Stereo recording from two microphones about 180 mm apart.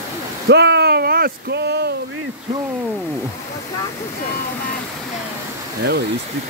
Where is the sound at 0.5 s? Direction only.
70° right (ahead or behind).